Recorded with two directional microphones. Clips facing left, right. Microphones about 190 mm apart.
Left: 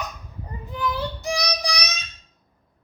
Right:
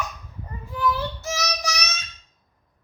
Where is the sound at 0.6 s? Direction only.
15° left (ahead or behind).